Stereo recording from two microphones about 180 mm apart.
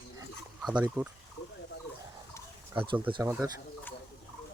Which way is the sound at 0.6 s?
5° right (ahead or behind).